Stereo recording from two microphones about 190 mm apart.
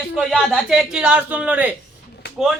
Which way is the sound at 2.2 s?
60° left (ahead or behind).